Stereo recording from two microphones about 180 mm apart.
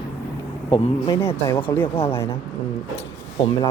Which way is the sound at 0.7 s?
30° left (ahead or behind).